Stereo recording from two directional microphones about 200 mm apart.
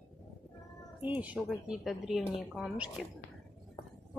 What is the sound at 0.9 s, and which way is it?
Speech, 5° right (ahead or behind).